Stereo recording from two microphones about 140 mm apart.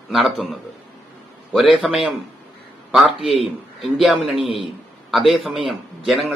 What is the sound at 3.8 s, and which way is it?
Speech, centre (ahead or behind).